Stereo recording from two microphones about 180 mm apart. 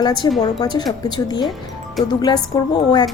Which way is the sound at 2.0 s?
Centre (ahead or behind).